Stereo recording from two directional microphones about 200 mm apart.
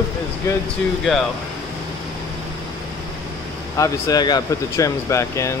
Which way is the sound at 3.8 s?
15° left (ahead or behind).